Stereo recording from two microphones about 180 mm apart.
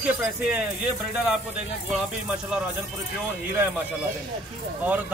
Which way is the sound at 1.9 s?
5° right (ahead or behind).